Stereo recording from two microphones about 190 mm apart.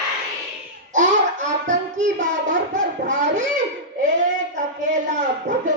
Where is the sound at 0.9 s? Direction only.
40° right (ahead or behind).